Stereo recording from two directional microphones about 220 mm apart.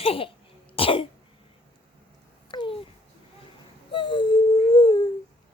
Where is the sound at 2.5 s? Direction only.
20° left (ahead or behind).